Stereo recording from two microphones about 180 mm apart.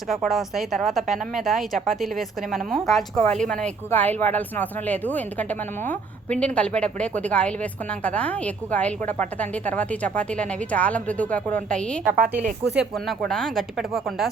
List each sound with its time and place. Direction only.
0.1 s a woman's voice: centre (ahead or behind)
12.0 s a woman's voice: 50° right (ahead or behind)
12.7 s a woman's voice: centre (ahead or behind)